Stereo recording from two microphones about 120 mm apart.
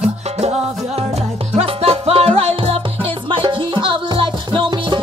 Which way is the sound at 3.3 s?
45° right (ahead or behind).